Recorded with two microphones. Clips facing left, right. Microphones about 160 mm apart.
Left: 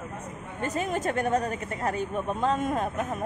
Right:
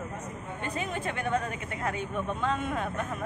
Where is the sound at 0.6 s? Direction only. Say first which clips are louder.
Left 6 dB; 40° left (ahead or behind).